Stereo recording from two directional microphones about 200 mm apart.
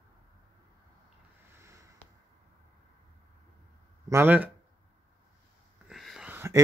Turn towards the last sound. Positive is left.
turn(degrees=-10)  # may be behind; listen again after turning